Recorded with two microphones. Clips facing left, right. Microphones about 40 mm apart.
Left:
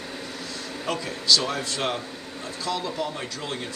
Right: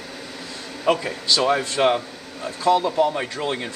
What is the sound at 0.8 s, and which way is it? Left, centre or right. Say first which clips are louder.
Speech: right 4 dB; right.